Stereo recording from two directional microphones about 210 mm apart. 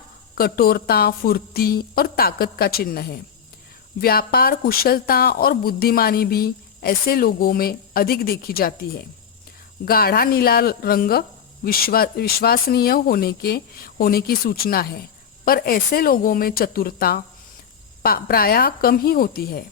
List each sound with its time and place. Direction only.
0.3 s speech: 45° left (ahead or behind)